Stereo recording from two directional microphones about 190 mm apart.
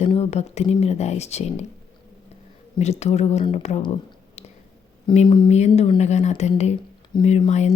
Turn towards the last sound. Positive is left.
turn(degrees=35)  # may be behind; listen again after turning